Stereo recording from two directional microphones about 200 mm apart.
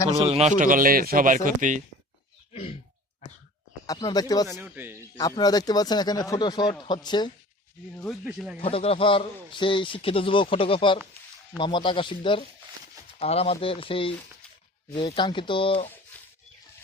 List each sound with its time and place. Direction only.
0.3 s a man's voice: 35° right (ahead or behind)
2.5 s a sound: 30° left (ahead or behind)
3.8 s a man's voice: 20° left (ahead or behind)
4.5 s speech: 10° right (ahead or behind)
5.1 s a man's voice: 20° left (ahead or behind)
8.0 s speech: centre (ahead or behind)
8.5 s a man's voice: 30° left (ahead or behind)